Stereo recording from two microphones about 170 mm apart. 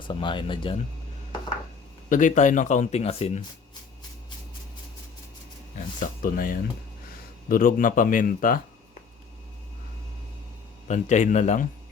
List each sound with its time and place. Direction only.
0.0 s speech: 30° left (ahead or behind)
2.0 s speech: 50° left (ahead or behind)
5.7 s speech: 50° left (ahead or behind)
10.8 s speech: 45° left (ahead or behind)